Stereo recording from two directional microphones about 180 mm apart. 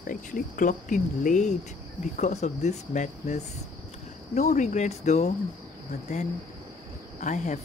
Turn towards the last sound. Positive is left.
turn(degrees=40)  # may be behind; listen again after turning